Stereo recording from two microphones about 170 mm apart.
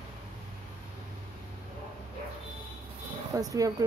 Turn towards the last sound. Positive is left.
turn(degrees=-20)  # may be behind; listen again after turning